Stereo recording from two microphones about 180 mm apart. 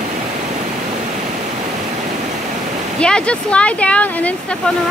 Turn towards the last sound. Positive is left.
turn(degrees=10)  # may be behind; listen again after turning